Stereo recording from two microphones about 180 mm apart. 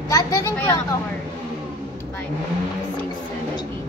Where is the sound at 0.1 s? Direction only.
15° left (ahead or behind).